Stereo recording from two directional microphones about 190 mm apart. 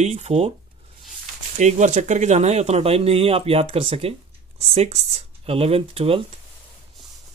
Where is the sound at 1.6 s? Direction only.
40° right (ahead or behind).